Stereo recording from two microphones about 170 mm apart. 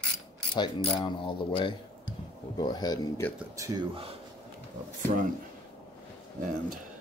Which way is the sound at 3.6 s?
25° right (ahead or behind).